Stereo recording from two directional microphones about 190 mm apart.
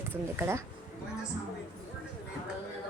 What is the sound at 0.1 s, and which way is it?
Speech, 10° right (ahead or behind).